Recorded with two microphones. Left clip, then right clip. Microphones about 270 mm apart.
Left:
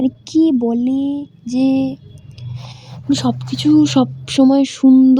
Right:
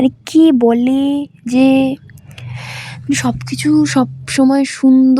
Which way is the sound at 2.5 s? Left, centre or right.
Right.